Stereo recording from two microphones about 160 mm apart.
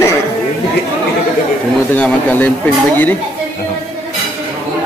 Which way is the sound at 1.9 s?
10° left (ahead or behind).